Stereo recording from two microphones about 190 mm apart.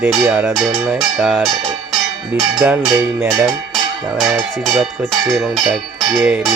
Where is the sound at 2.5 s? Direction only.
5° right (ahead or behind).